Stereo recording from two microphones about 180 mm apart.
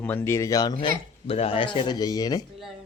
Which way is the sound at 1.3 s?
30° left (ahead or behind).